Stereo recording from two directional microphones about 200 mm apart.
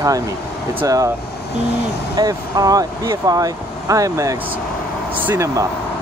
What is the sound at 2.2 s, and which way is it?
Speech, 20° right (ahead or behind).